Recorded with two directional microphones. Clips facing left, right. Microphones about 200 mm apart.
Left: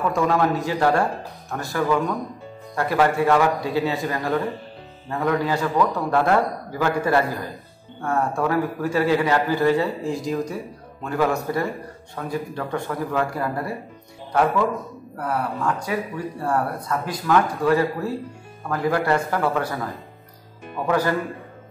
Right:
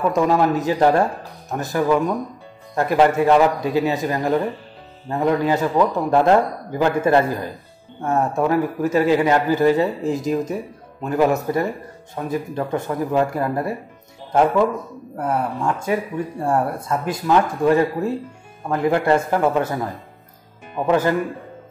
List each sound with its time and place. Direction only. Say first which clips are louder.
0.1 s a man's voice: right 3 dB; 20° right (ahead or behind)
15.1 s a man's voice: right 3 dB; 25° right (ahead or behind)